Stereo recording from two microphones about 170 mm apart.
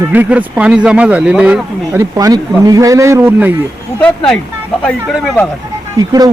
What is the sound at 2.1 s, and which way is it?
Speech, 20° right (ahead or behind).